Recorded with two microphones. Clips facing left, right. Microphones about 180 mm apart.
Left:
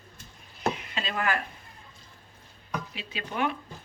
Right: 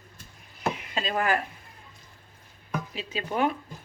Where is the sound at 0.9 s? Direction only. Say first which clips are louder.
Right 4 dB; 40° right (ahead or behind).